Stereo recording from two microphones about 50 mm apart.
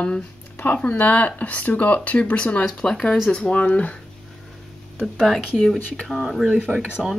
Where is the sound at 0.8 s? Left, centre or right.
Left.